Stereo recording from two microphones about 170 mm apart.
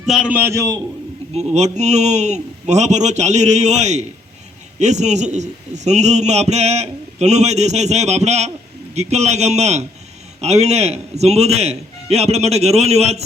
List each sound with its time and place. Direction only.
0.0 s a man's voice: 5° right (ahead or behind)
1.4 s a man's voice: 40° right (ahead or behind)